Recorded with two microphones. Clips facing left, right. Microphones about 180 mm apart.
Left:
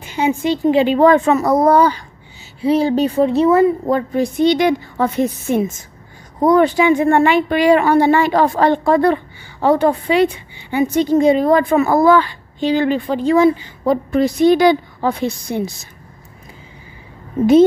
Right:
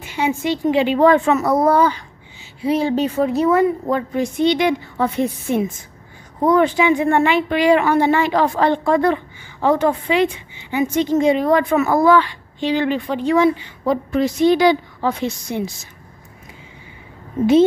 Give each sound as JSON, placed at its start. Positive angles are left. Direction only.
{"t": 0.2, "sound": "a woman's voice", "side_deg": 40}